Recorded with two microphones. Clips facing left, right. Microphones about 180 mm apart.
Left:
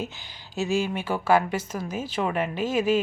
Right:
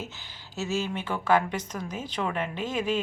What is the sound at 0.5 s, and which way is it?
Speech, 15° left (ahead or behind).